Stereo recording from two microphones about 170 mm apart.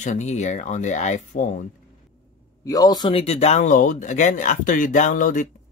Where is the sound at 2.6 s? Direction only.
20° left (ahead or behind).